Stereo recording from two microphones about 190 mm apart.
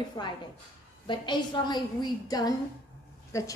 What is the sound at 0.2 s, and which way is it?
A woman's voice, 20° left (ahead or behind).